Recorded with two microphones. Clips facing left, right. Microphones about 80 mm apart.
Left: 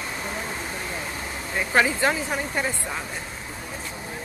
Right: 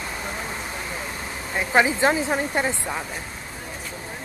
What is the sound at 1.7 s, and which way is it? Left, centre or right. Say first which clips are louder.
Speech: right 2 dB; centre.